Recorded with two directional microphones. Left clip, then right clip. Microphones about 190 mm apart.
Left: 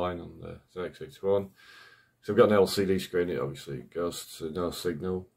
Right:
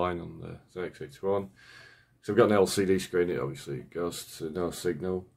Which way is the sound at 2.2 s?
10° right (ahead or behind).